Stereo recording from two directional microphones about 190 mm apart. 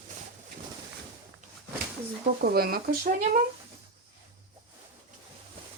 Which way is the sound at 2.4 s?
55° right (ahead or behind).